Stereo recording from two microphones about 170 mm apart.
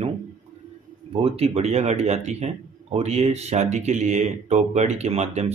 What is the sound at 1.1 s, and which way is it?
Speech, 35° right (ahead or behind).